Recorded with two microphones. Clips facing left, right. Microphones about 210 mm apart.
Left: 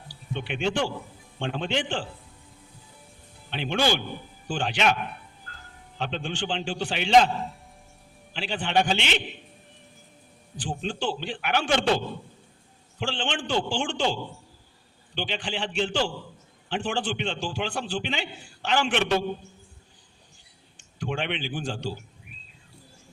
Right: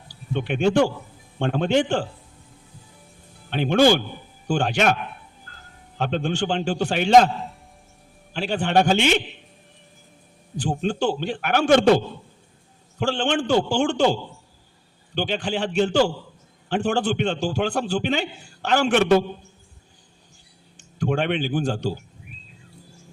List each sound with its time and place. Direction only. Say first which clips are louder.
0.3 s a man's voice: right 8 dB; 45° right (ahead or behind)
3.5 s a man's voice: right 8 dB; 45° right (ahead or behind)
6.0 s a man's voice: right 7 dB; 45° right (ahead or behind)
7.3 s a man's voice: even; centre (ahead or behind)
8.3 s a man's voice: right 6 dB; 45° right (ahead or behind)
10.6 s a man's voice: right 7 dB; 45° right (ahead or behind)
21.0 s a man's voice: right 7 dB; 45° right (ahead or behind)